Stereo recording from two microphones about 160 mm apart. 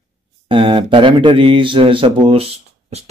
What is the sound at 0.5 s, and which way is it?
Speech, 30° right (ahead or behind).